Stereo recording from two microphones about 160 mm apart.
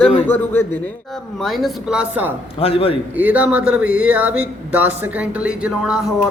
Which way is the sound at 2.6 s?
35° left (ahead or behind).